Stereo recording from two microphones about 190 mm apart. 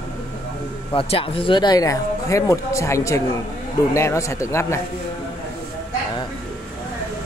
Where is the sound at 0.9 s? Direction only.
30° left (ahead or behind).